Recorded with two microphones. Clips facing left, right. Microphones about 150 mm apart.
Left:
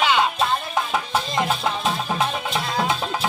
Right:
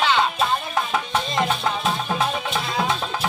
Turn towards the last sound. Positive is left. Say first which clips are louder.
# left 1 dB
turn(degrees=0)  # may be behind; listen again after turning